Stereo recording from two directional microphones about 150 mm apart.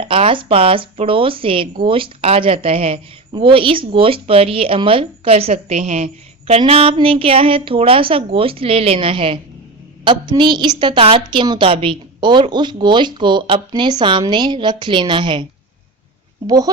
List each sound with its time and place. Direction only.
0.0 s a woman's voice: 35° right (ahead or behind)